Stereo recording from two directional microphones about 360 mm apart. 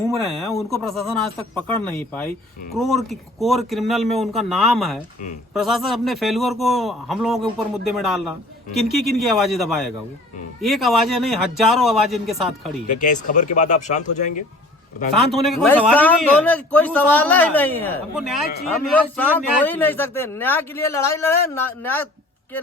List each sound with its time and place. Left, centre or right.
0.0 s a man's voice: centre
13.0 s speech: left
15.3 s a man's voice: centre